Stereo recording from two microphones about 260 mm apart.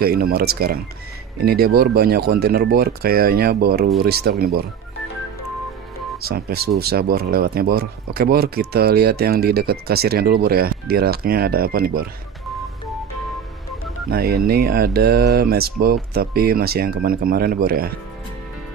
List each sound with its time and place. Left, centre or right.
0.0 s speech: right
6.2 s speech: right
14.1 s speech: right